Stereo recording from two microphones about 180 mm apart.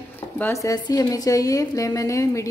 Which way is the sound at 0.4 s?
15° left (ahead or behind).